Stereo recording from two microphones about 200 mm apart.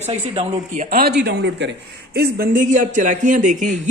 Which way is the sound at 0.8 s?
50° right (ahead or behind).